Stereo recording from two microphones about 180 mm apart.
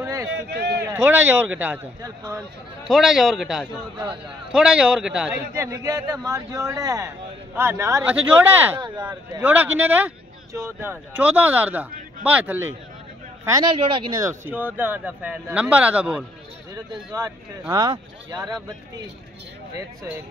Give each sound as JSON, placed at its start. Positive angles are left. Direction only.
{"t": 0.0, "sound": "a sound", "side_deg": -20}
{"t": 0.4, "sound": "a man's voice", "side_deg": -65}
{"t": 0.9, "sound": "speech", "side_deg": -10}
{"t": 2.0, "sound": "speech", "side_deg": -20}
{"t": 2.8, "sound": "a man's voice", "side_deg": 0}
{"t": 5.5, "sound": "speech", "side_deg": -15}
{"t": 8.7, "sound": "speech", "side_deg": -25}
{"t": 9.4, "sound": "speech", "side_deg": -10}
{"t": 13.7, "sound": "speech", "side_deg": -30}
{"t": 14.2, "sound": "speech", "side_deg": -10}
{"t": 16.7, "sound": "speech", "side_deg": -20}